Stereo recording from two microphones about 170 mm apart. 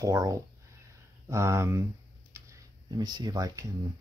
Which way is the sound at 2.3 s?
15° right (ahead or behind).